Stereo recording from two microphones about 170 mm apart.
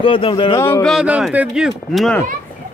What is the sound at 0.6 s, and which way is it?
Speech, 15° left (ahead or behind).